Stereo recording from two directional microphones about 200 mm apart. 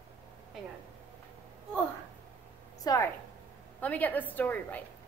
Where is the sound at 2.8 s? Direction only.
20° left (ahead or behind).